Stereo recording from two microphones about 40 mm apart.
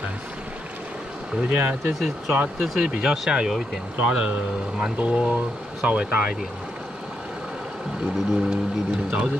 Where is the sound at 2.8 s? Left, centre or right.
Right.